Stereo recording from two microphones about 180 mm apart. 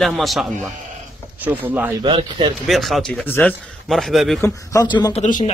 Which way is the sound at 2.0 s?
25° right (ahead or behind).